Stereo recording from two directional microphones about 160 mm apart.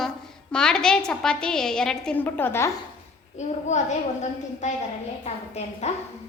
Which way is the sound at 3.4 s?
45° left (ahead or behind).